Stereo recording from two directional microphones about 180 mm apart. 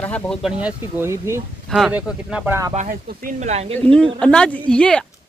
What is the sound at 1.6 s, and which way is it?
Speech, centre (ahead or behind).